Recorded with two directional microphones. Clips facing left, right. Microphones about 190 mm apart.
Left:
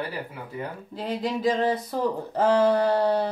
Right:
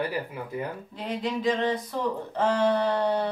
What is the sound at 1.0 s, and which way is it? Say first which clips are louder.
Speech: left 2 dB; 35° left (ahead or behind).